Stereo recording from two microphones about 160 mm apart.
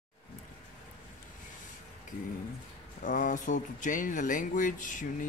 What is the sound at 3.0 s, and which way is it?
Speech, 55° left (ahead or behind).